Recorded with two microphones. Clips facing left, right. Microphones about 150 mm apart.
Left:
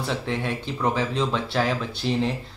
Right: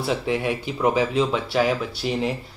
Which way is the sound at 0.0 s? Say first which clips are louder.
Right 4 dB; 10° right (ahead or behind).